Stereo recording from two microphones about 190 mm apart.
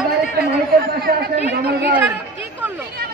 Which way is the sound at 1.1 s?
55° right (ahead or behind).